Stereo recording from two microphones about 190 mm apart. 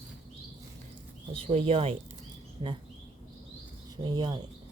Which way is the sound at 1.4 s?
30° right (ahead or behind).